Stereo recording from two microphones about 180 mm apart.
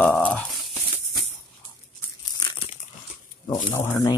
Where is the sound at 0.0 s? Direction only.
5° left (ahead or behind).